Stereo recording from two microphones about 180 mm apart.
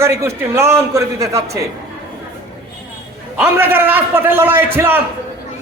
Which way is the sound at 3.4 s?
10° right (ahead or behind).